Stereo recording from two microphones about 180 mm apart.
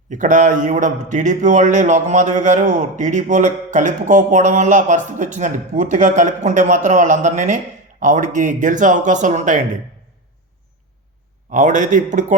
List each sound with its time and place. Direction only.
0.1 s a man's voice: 45° right (ahead or behind)
11.5 s a man's voice: 45° right (ahead or behind)